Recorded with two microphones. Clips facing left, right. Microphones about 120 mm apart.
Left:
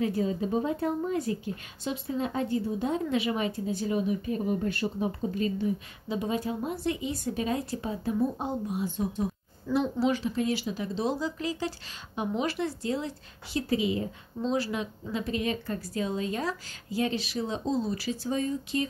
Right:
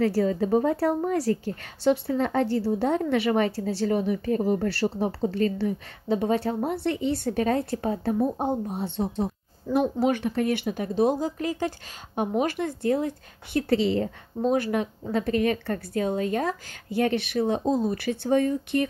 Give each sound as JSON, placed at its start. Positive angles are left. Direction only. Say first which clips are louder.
{"t": 0.0, "sound": "a woman's voice", "louder": "right 5 dB", "side_deg": -70}
{"t": 5.6, "sound": "a woman's voice", "louder": "right 2 dB", "side_deg": -60}
{"t": 8.7, "sound": "a woman's voice", "louder": "right 2 dB", "side_deg": -70}
{"t": 9.8, "sound": "a woman's voice", "louder": "right 4 dB", "side_deg": -50}